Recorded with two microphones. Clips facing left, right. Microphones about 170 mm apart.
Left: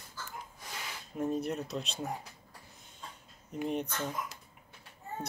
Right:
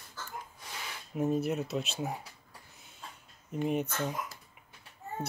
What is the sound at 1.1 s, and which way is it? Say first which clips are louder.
Speech: right 3 dB; 5° right (ahead or behind).